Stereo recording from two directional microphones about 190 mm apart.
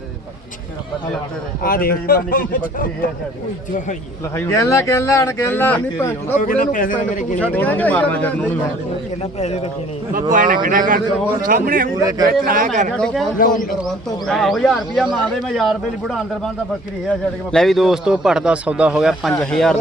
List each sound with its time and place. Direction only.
1.6 s speech: 50° left (ahead or behind)
4.4 s speech: 15° left (ahead or behind)
6.3 s speech: 45° left (ahead or behind)
7.3 s speech: 10° left (ahead or behind)
10.3 s speech: 45° right (ahead or behind)
13.4 s speech: 45° left (ahead or behind)
14.3 s a man's voice: centre (ahead or behind)